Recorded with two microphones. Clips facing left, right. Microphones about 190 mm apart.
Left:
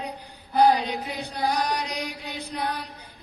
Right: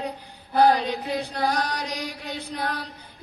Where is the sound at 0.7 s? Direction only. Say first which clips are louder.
Right 3 dB; 15° left (ahead or behind).